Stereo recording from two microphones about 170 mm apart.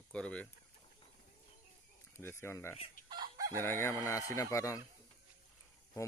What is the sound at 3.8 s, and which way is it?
Speech, 20° left (ahead or behind).